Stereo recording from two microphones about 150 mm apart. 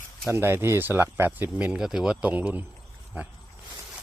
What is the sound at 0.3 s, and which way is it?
Speech, 15° right (ahead or behind).